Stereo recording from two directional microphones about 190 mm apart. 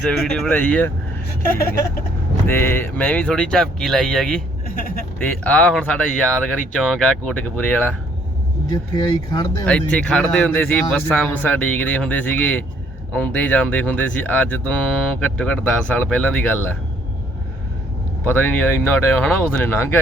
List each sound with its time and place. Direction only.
0.0 s speech: 5° left (ahead or behind)
2.5 s speech: 10° left (ahead or behind)
4.7 s speech: 50° left (ahead or behind)
5.2 s speech: 5° left (ahead or behind)
8.7 s speech: 20° left (ahead or behind)
9.6 s speech: 5° left (ahead or behind)
18.3 s speech: 10° left (ahead or behind)